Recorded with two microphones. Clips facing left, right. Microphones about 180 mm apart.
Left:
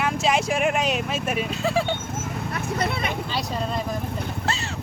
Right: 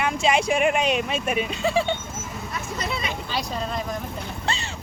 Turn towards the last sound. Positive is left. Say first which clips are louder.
# left 1 dB
turn(degrees=5)  # may be behind; listen again after turning